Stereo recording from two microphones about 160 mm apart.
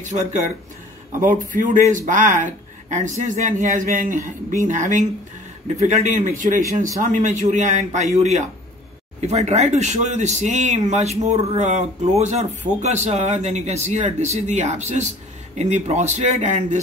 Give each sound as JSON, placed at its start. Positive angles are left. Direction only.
{"t": 0.0, "sound": "speech", "side_deg": -50}